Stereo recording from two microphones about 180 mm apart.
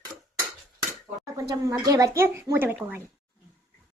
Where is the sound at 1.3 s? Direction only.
20° right (ahead or behind).